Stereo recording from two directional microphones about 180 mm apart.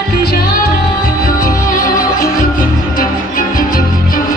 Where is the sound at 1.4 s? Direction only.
50° left (ahead or behind).